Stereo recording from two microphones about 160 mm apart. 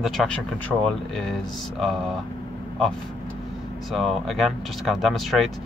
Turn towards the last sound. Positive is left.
turn(degrees=0)  # may be behind; listen again after turning